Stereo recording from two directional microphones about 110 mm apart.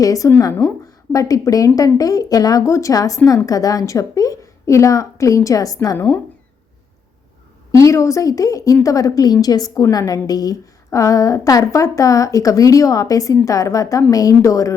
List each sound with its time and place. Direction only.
0.0 s a woman's voice: 30° left (ahead or behind)
7.7 s a woman's voice: 25° left (ahead or behind)